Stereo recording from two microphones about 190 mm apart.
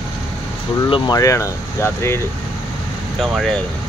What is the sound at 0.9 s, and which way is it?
Speech, 20° left (ahead or behind).